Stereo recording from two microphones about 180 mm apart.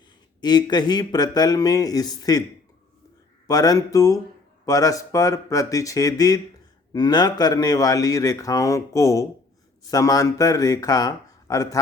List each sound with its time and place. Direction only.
0.4 s speech: 25° left (ahead or behind)
3.4 s speech: 20° left (ahead or behind)